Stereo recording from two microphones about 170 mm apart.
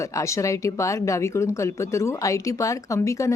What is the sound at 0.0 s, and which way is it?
A woman's voice, 20° left (ahead or behind).